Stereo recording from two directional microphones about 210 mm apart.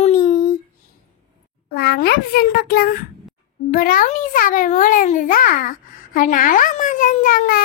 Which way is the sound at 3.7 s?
40° left (ahead or behind).